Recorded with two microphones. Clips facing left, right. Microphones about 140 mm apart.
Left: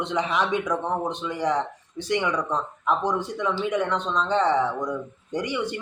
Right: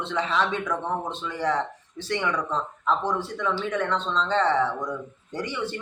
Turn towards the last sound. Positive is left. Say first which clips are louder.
# left 3 dB
turn(degrees=15)  # may be behind; listen again after turning